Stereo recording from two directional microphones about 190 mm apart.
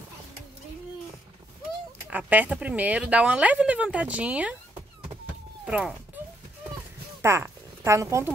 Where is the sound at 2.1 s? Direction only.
10° right (ahead or behind).